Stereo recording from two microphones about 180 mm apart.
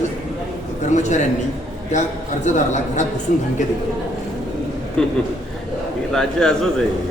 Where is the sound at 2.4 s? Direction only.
40° left (ahead or behind).